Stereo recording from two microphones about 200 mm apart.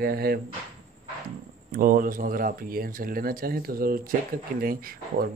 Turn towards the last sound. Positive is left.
turn(degrees=-45)  # may be behind; listen again after turning